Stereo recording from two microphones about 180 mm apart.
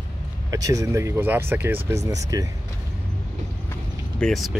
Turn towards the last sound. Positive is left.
turn(degrees=0)  # may be behind; listen again after turning